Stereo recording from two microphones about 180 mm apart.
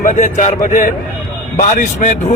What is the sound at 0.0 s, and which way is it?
A man's voice, 45° left (ahead or behind).